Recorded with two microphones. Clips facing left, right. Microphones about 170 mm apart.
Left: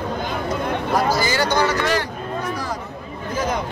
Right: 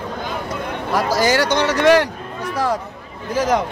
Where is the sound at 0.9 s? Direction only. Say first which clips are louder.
Right 4 dB; 85° right.